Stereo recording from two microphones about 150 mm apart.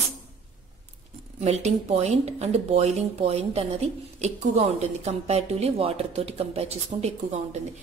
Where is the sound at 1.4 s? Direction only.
45° right (ahead or behind).